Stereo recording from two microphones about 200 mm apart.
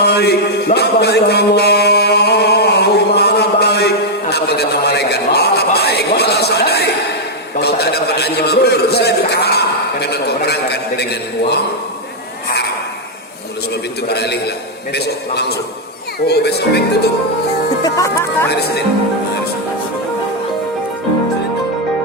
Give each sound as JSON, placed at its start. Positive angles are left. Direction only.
{"t": 0.0, "sound": "music", "side_deg": 55}
{"t": 7.6, "sound": "a sound", "side_deg": 55}
{"t": 14.1, "sound": "speech", "side_deg": 55}
{"t": 17.8, "sound": "speech", "side_deg": 15}